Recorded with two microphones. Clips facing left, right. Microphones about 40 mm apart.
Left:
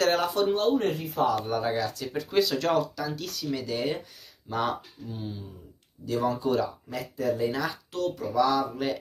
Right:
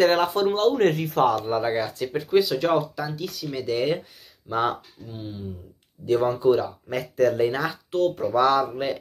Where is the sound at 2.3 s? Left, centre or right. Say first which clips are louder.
Right 4 dB; centre.